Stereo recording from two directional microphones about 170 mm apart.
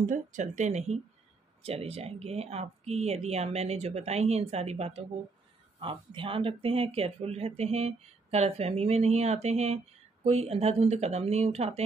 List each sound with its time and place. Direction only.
0.0 s speech: 45° right (ahead or behind)